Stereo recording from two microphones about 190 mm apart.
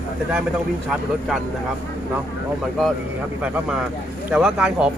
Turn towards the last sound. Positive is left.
turn(degrees=-5)  # may be behind; listen again after turning